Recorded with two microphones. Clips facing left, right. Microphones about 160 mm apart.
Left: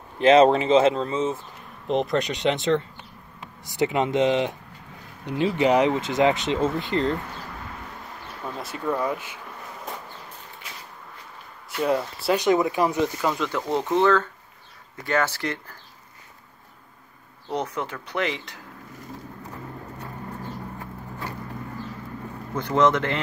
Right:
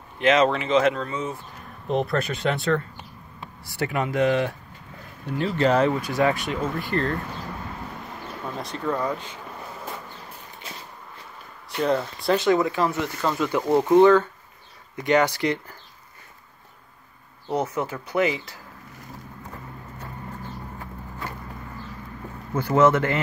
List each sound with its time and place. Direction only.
0.2 s speech: 30° left (ahead or behind)
8.5 s speech: 5° left (ahead or behind)
11.8 s speech: 10° left (ahead or behind)
13.3 s speech: 10° right (ahead or behind)
17.5 s speech: 5° right (ahead or behind)
22.5 s speech: 5° right (ahead or behind)